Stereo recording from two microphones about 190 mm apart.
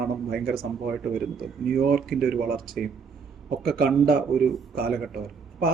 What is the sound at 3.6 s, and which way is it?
Speech, 55° right (ahead or behind).